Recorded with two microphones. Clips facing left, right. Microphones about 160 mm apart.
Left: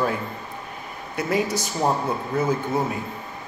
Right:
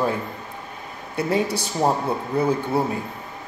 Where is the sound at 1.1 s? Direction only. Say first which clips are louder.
Right 1 dB; 30° right (ahead or behind).